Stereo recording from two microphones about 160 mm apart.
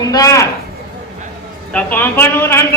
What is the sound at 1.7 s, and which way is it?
Speech, 10° left (ahead or behind).